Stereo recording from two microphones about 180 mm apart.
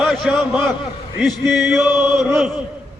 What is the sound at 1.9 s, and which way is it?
Chant, 20° left (ahead or behind).